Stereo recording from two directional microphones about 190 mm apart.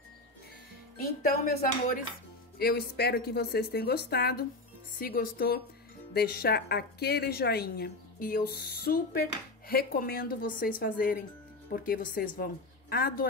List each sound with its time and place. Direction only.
0.9 s speech: 40° left (ahead or behind)
2.6 s a woman's voice: 55° left (ahead or behind)